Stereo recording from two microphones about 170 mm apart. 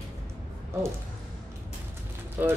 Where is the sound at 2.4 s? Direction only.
10° right (ahead or behind).